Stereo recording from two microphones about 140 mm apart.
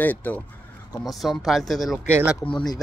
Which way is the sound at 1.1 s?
Centre (ahead or behind).